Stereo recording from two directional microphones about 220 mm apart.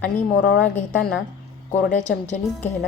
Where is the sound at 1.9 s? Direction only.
35° left (ahead or behind).